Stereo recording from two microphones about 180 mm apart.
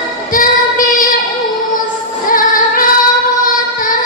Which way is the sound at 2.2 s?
50° left (ahead or behind).